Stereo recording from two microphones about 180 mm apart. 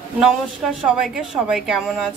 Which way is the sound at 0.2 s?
5° right (ahead or behind).